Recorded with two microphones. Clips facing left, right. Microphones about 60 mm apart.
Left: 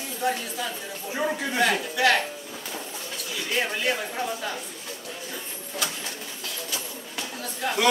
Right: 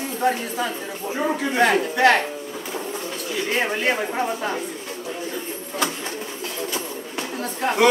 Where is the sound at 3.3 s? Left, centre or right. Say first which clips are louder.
Right 4 dB; right.